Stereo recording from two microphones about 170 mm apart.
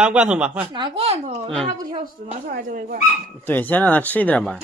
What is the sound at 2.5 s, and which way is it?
Speech, 50° right (ahead or behind).